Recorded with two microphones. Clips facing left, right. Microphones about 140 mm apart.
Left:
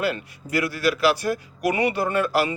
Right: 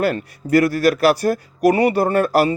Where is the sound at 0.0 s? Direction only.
45° right (ahead or behind).